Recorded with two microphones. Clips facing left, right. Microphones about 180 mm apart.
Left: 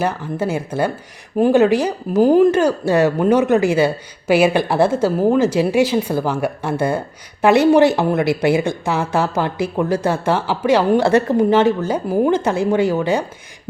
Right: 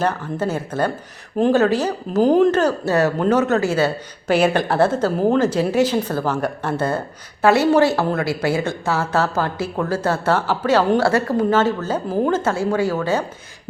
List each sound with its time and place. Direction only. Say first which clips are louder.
0.0 s speech: left 1 dB; 10° left (ahead or behind)